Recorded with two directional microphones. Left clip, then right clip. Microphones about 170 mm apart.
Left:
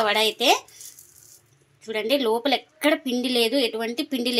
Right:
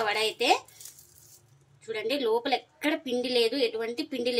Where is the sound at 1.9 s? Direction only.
40° left (ahead or behind).